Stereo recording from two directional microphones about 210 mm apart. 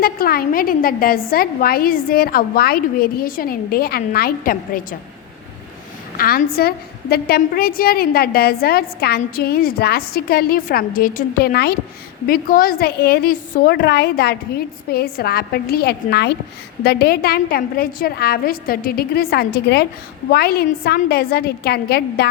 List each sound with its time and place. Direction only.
0.0 s a woman's voice: 45° left (ahead or behind)
6.1 s a woman's voice: 45° left (ahead or behind)